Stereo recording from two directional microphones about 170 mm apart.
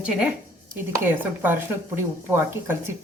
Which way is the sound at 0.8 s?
10° right (ahead or behind).